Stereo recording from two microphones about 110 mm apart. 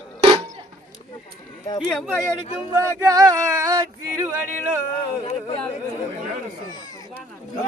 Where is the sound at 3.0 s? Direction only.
30° right (ahead or behind).